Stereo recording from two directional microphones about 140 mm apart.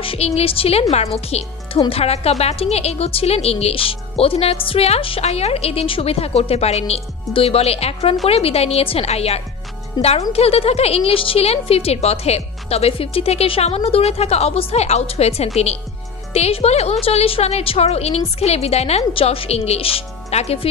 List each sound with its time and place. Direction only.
0.0 s a woman's voice: 45° left (ahead or behind)
10.0 s speech: 30° left (ahead or behind)
10.3 s a woman's voice: 45° left (ahead or behind)